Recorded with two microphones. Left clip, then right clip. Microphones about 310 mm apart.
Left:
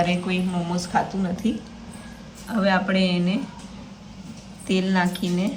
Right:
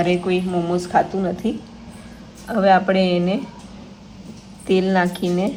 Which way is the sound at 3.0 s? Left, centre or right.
Centre.